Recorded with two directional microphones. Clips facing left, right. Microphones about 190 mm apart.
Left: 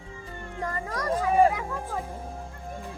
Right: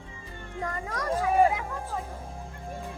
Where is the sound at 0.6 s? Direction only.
Centre (ahead or behind).